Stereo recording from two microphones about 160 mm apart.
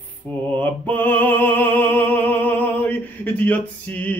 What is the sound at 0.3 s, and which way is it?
Music, 10° left (ahead or behind).